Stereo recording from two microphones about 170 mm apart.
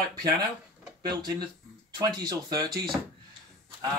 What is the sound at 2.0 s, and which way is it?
Speech, 25° right (ahead or behind).